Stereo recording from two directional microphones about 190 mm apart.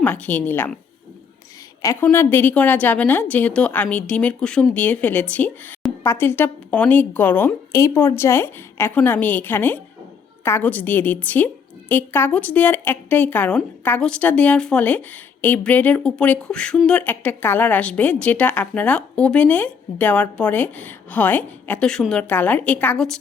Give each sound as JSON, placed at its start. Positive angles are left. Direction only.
{"t": 0.0, "sound": "a woman's voice", "side_deg": 10}
{"t": 1.8, "sound": "a woman's voice", "side_deg": 20}